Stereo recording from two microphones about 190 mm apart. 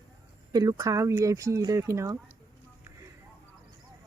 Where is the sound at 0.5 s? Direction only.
20° right (ahead or behind).